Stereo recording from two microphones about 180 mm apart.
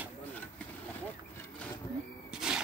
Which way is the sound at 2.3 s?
5° right (ahead or behind).